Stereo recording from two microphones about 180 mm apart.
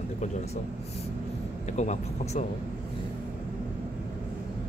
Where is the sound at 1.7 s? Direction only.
40° left (ahead or behind).